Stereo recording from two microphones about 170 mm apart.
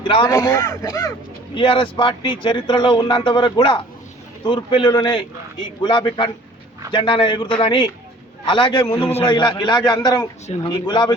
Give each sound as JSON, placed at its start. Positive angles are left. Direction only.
{"t": 0.0, "sound": "speech", "side_deg": 30}
{"t": 0.3, "sound": "speech", "side_deg": 15}
{"t": 1.5, "sound": "speech", "side_deg": 30}